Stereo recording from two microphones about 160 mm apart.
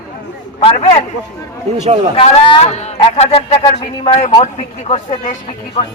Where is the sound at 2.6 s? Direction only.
45° left (ahead or behind).